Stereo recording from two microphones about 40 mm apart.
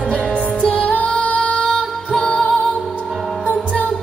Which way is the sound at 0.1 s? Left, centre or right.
Left.